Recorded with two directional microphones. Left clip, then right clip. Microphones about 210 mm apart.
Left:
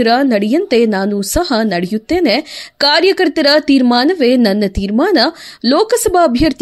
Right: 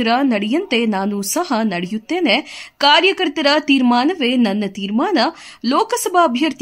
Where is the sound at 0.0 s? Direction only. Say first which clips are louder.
Left 5 dB; 15° left (ahead or behind).